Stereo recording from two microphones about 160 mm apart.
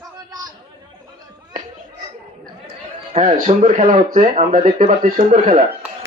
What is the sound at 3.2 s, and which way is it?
Speech, 55° right (ahead or behind).